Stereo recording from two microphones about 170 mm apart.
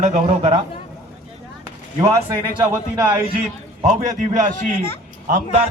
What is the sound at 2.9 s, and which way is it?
Speech, 25° right (ahead or behind).